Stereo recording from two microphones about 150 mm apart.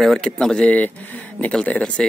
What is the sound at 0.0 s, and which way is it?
Speech, centre (ahead or behind).